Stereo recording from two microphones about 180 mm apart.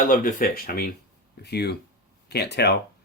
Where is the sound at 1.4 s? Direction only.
65° left (ahead or behind).